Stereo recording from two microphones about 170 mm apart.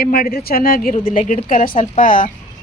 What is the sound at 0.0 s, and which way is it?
Speech, 60° left (ahead or behind).